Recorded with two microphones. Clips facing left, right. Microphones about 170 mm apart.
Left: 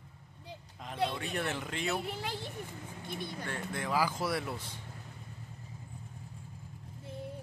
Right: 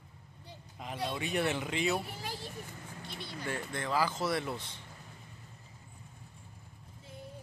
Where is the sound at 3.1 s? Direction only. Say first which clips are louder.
Left 5 dB; 50° left (ahead or behind).